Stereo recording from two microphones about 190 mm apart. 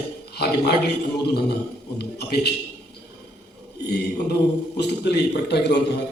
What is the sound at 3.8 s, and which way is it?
A man's voice, 60° left (ahead or behind).